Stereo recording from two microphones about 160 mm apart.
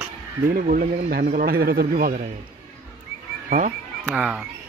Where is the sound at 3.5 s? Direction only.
55° right (ahead or behind).